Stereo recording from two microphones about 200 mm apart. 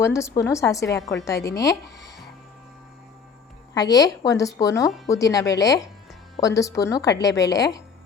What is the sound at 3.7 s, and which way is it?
A woman's voice, 20° left (ahead or behind).